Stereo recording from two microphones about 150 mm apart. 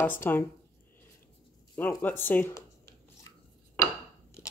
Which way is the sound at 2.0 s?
15° left (ahead or behind).